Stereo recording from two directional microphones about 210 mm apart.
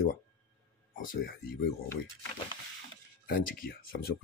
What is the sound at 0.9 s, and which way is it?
Speech, 40° left (ahead or behind).